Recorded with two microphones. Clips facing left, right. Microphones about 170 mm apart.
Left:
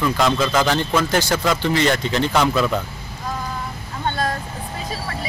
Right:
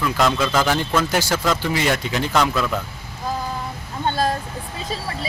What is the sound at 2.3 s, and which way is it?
Speech, 5° left (ahead or behind).